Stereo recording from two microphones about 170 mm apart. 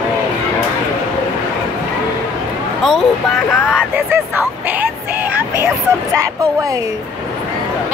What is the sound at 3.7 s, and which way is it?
Speech, 10° right (ahead or behind).